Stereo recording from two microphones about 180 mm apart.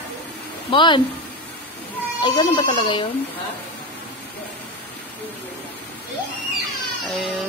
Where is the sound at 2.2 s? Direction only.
30° left (ahead or behind).